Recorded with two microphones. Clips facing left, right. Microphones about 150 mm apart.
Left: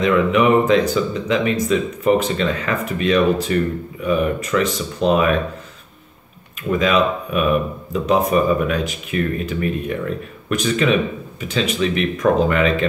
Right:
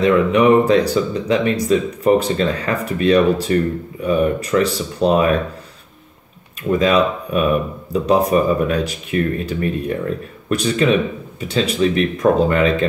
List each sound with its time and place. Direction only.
0.0 s speech: 35° right (ahead or behind)
6.8 s speech: 35° right (ahead or behind)